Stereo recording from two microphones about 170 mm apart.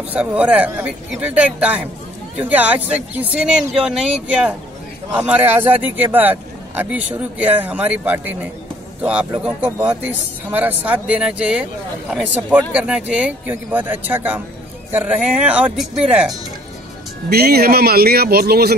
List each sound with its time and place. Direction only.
0.1 s speech: 5° right (ahead or behind)
17.3 s speech: 65° right (ahead or behind)